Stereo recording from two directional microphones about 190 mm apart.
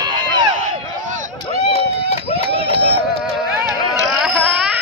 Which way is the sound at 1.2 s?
35° right (ahead or behind).